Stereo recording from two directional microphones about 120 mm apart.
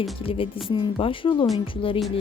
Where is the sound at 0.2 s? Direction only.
50° left (ahead or behind).